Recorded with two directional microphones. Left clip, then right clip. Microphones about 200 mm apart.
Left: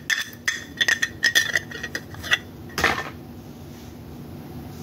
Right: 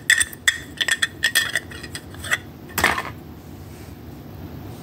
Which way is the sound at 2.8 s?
50° right (ahead or behind).